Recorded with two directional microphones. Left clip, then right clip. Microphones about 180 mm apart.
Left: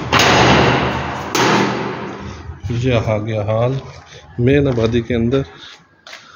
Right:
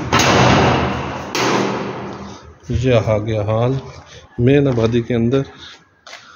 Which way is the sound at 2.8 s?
25° right (ahead or behind).